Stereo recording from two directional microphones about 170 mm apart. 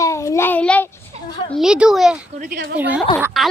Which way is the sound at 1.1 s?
40° right (ahead or behind).